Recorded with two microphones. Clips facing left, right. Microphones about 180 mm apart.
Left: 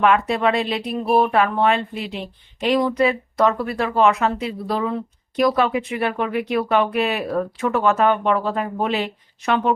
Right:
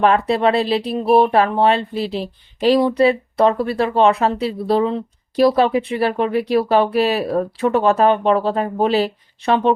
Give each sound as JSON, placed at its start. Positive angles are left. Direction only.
{"t": 0.0, "sound": "speech", "side_deg": -35}